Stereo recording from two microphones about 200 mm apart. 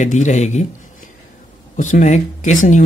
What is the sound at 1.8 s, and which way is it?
Speech, 40° left (ahead or behind).